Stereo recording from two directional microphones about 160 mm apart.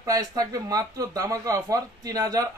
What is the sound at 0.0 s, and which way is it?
Speech, 20° right (ahead or behind).